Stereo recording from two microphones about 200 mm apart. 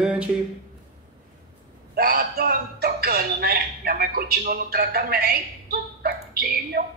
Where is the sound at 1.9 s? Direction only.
50° right (ahead or behind).